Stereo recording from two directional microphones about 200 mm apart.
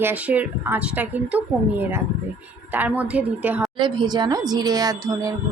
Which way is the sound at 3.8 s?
25° right (ahead or behind).